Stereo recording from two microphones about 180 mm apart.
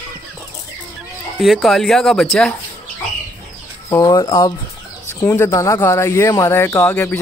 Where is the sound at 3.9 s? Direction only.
20° left (ahead or behind).